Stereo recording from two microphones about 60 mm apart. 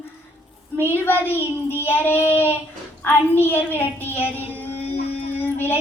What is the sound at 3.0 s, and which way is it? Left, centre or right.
Speech, left.